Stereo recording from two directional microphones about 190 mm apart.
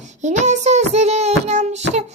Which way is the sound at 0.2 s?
40° right (ahead or behind).